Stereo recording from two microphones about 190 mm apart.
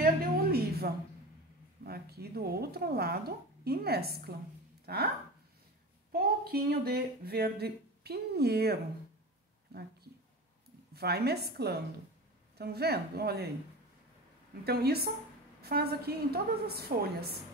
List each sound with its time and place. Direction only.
0.0 s a sound: 55° right (ahead or behind)
1.9 s speech: 55° right (ahead or behind)
6.1 s speech: 55° right (ahead or behind)
10.9 s speech: 55° right (ahead or behind)
14.6 s speech: 55° right (ahead or behind)